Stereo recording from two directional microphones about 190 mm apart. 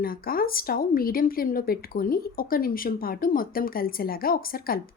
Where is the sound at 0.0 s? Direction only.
50° left (ahead or behind).